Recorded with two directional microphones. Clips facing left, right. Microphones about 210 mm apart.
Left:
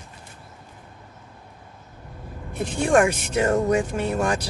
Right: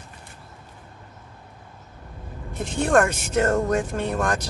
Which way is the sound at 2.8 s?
10° left (ahead or behind).